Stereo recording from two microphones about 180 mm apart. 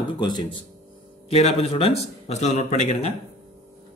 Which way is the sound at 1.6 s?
35° left (ahead or behind).